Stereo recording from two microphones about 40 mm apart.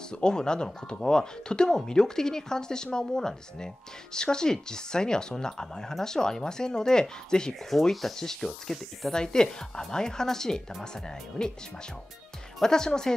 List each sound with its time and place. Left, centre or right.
0.1 s speech: left
7.7 s speech: centre
9.1 s speech: centre
12.6 s speech: centre